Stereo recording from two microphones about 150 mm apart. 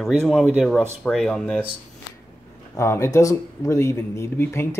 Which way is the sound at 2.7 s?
20° left (ahead or behind).